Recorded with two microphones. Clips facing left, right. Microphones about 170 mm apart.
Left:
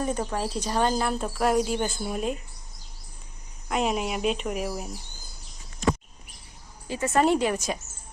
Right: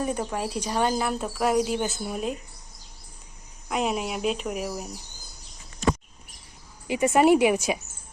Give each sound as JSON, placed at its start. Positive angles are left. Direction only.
{"t": 0.0, "sound": "speech", "side_deg": -10}
{"t": 3.7, "sound": "speech", "side_deg": 0}
{"t": 6.8, "sound": "a woman's voice", "side_deg": -15}